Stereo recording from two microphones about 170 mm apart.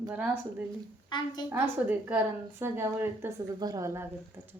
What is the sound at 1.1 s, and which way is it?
Speech, 25° left (ahead or behind).